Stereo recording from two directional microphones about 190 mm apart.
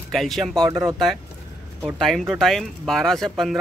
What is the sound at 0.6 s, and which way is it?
Speech, 15° right (ahead or behind).